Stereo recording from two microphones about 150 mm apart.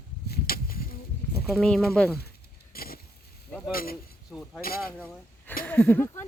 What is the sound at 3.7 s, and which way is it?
Speech, 80° left.